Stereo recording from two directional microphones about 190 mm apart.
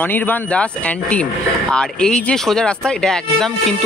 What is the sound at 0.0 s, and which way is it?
Speech, 10° left (ahead or behind).